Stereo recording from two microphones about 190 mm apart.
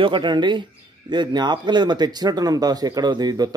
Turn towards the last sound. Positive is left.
turn(degrees=-20)  # may be behind; listen again after turning